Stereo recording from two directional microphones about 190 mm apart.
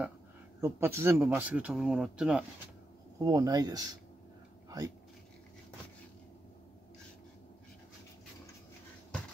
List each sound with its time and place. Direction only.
0.6 s speech: 15° right (ahead or behind)
3.2 s speech: 20° right (ahead or behind)
4.6 s a sound: 20° right (ahead or behind)